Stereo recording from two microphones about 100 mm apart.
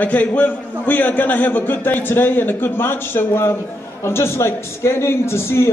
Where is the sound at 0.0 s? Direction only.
15° left (ahead or behind).